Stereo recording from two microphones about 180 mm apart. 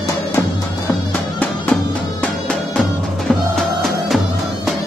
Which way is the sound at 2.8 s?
Centre (ahead or behind).